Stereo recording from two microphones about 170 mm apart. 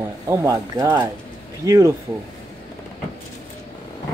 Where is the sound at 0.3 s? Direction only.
15° right (ahead or behind).